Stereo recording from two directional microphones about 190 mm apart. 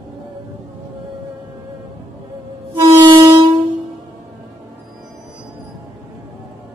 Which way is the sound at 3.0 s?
25° right (ahead or behind).